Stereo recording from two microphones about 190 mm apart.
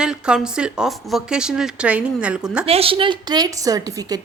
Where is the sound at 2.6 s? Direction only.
30° right (ahead or behind).